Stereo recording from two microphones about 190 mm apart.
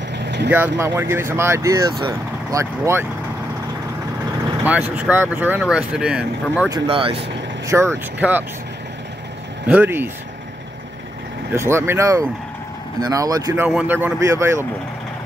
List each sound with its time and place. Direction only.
0.2 s vehicle: 65° right (ahead or behind)
0.5 s speech: 10° right (ahead or behind)
4.9 s speech: 10° right (ahead or behind)
6.7 s speech: 25° right (ahead or behind)
7.6 s speech: 15° right (ahead or behind)
9.7 s speech: 10° right (ahead or behind)
11.5 s speech: 15° right (ahead or behind)
13.7 s speech: 5° right (ahead or behind)